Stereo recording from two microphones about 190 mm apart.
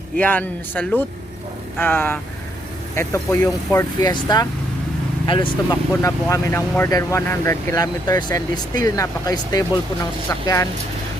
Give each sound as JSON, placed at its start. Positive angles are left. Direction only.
{"t": 0.2, "sound": "speech", "side_deg": 10}
{"t": 5.9, "sound": "speech", "side_deg": 15}